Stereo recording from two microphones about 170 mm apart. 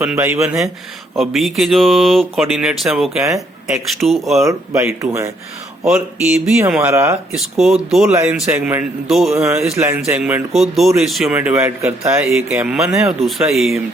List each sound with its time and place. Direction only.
0.0 s speech: 10° right (ahead or behind)
1.1 s speech: centre (ahead or behind)
4.8 s speech: 15° right (ahead or behind)
5.8 s speech: 5° right (ahead or behind)
7.3 s speech: centre (ahead or behind)
9.3 s speech: 15° right (ahead or behind)
12.1 s speech: 5° right (ahead or behind)